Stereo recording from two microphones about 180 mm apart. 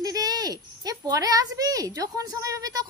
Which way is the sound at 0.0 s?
20° right (ahead or behind).